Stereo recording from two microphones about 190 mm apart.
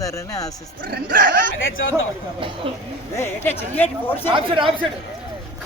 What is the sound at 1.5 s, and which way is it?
Speech, 90° left.